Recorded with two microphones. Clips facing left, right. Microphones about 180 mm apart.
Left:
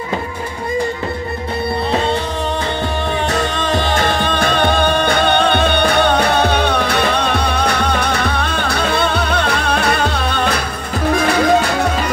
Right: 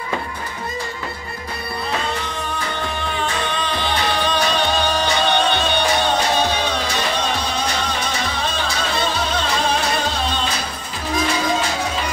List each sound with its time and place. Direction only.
3.3 s music: 45° left (ahead or behind); by 11.9 s 65° left (ahead or behind)